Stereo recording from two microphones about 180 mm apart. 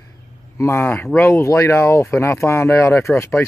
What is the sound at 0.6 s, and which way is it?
Speech, 15° left (ahead or behind).